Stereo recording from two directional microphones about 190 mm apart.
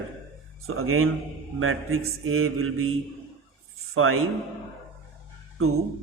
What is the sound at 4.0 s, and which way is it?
Speech, 90° right.